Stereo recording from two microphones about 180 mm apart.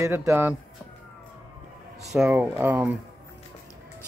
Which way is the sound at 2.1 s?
5° right (ahead or behind).